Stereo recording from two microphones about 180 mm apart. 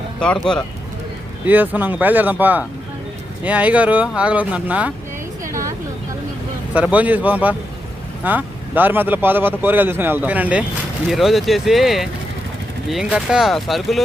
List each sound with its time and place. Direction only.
0.2 s speech: 5° left (ahead or behind)
1.5 s speech: 10° right (ahead or behind)
5.5 s a sound: 15° right (ahead or behind)
6.7 s speech: 10° right (ahead or behind)